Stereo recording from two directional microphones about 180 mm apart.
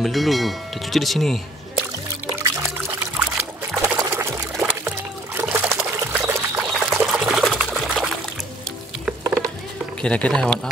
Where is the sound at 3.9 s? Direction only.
15° right (ahead or behind).